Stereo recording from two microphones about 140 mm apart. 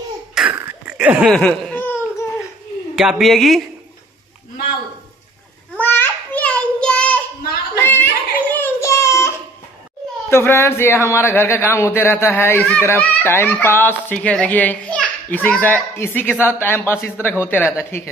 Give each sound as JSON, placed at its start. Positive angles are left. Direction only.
{"t": 0.3, "sound": "burping", "side_deg": -5}
{"t": 0.6, "sound": "cough", "side_deg": -15}
{"t": 1.3, "sound": "baby cry", "side_deg": 5}
{"t": 3.0, "sound": "a woman's voice", "side_deg": -5}
{"t": 5.8, "sound": "child singing", "side_deg": 15}
{"t": 7.8, "sound": "a sound", "side_deg": 15}
{"t": 10.3, "sound": "speech", "side_deg": 15}